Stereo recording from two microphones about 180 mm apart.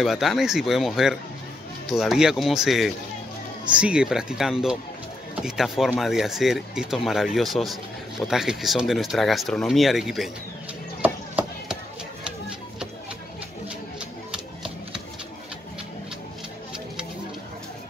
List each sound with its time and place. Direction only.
0.0 s speech: centre (ahead or behind)
11.0 s a sound: 5° right (ahead or behind)
14.3 s music: 5° right (ahead or behind)